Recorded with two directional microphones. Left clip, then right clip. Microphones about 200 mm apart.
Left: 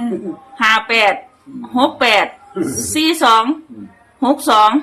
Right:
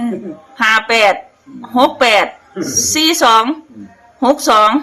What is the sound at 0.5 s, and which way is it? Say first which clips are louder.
Speech: right 1 dB; 25° right (ahead or behind).